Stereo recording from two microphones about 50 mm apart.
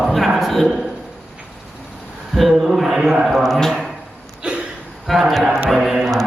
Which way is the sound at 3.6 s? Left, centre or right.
Centre.